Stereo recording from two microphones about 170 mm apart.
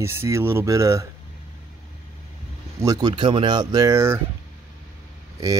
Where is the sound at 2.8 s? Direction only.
25° right (ahead or behind).